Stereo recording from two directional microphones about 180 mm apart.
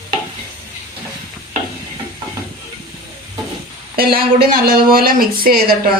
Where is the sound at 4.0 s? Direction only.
55° right (ahead or behind).